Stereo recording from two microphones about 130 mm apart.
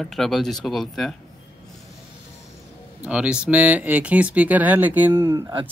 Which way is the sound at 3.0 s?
10° right (ahead or behind).